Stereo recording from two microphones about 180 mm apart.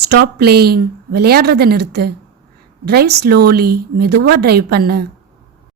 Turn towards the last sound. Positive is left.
turn(degrees=-60)  # may be behind; listen again after turning